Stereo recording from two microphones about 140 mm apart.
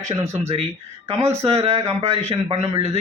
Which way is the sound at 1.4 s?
45° right (ahead or behind).